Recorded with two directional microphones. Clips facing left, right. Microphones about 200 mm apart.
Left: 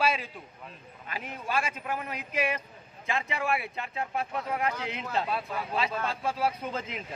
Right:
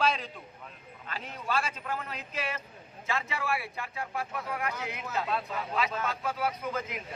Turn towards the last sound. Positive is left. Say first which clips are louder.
# left 1 dB
turn(degrees=30)  # may be behind; listen again after turning